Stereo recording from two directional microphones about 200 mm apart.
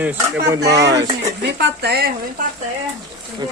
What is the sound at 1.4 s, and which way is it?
Speech, 55° right (ahead or behind).